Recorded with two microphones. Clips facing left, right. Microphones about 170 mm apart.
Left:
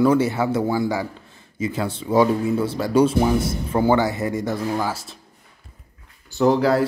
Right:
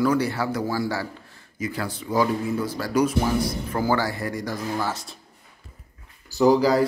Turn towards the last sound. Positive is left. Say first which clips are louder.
# even
turn(degrees=0)  # may be behind; listen again after turning